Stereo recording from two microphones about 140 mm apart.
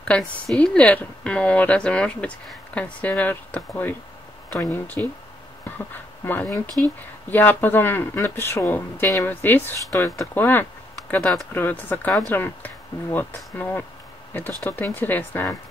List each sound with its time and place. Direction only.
0.0 s a woman's voice: 5° left (ahead or behind)